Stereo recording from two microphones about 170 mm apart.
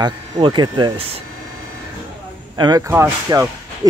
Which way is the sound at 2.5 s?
25° right (ahead or behind).